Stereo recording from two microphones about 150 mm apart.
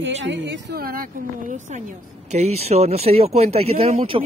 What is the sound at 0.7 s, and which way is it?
Speech, 85° right.